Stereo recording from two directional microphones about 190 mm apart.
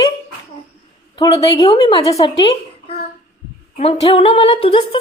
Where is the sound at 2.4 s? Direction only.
30° left (ahead or behind).